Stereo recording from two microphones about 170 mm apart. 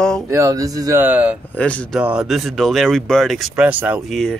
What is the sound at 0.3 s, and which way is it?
Speech, 20° right (ahead or behind).